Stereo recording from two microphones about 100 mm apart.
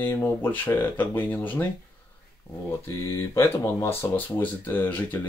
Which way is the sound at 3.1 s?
25° left (ahead or behind).